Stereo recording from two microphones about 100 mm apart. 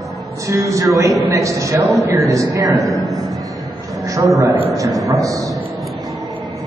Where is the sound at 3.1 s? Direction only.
Centre (ahead or behind).